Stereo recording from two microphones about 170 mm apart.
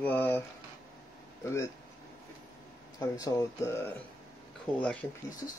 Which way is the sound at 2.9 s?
20° left (ahead or behind).